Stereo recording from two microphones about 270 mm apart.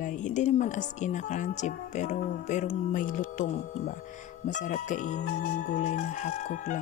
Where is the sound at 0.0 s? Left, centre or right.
Left.